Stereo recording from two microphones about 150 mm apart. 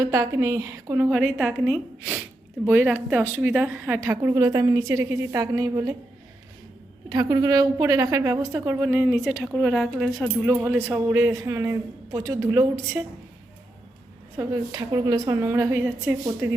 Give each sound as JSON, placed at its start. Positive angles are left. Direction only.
{"t": 0.0, "sound": "a woman's voice", "side_deg": -20}
{"t": 7.1, "sound": "a woman's voice", "side_deg": -25}
{"t": 10.5, "sound": "a woman's voice", "side_deg": -15}
{"t": 14.3, "sound": "a woman's voice", "side_deg": -25}